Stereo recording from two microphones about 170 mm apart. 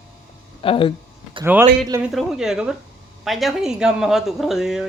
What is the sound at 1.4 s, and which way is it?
Speech, 15° right (ahead or behind).